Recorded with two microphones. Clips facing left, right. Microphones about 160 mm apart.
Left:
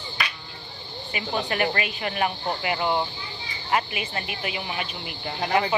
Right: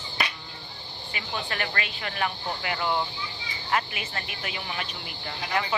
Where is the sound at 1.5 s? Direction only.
20° left (ahead or behind).